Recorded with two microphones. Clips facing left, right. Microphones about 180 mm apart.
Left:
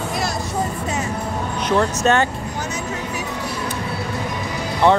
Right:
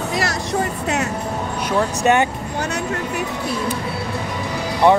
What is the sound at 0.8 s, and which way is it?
Speech, 70° right (ahead or behind).